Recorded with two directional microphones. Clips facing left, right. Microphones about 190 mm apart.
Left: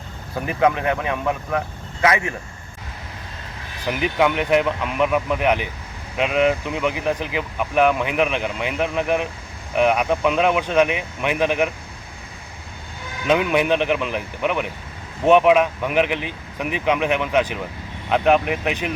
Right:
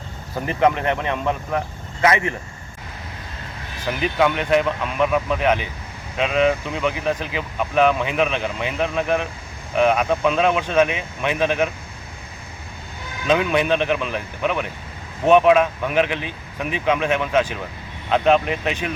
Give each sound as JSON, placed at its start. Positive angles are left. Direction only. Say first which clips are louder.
{"t": 0.4, "sound": "speech", "louder": "even", "side_deg": 10}
{"t": 1.2, "sound": "speech", "louder": "even", "side_deg": -15}
{"t": 2.0, "sound": "speech", "louder": "right 1 dB", "side_deg": 10}
{"t": 3.8, "sound": "speech", "louder": "even", "side_deg": 15}
{"t": 13.2, "sound": "speech", "louder": "even", "side_deg": 15}